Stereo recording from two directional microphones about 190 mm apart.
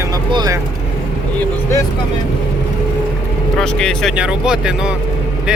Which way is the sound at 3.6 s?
5° left (ahead or behind).